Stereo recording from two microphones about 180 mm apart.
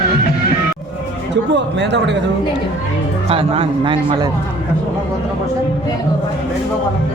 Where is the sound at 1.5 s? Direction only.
75° right (ahead or behind).